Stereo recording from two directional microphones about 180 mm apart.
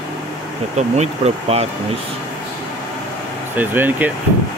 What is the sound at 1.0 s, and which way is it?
Speech, 35° right (ahead or behind).